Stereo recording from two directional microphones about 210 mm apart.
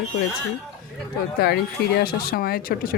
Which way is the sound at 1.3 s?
50° left (ahead or behind).